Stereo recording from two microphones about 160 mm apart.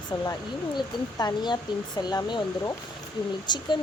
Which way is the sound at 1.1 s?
25° left (ahead or behind).